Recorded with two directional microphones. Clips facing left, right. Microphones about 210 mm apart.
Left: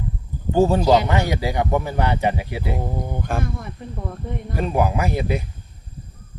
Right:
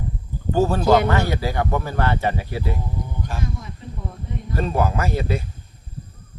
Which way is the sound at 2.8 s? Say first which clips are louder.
Left 4 dB; 55° left (ahead or behind).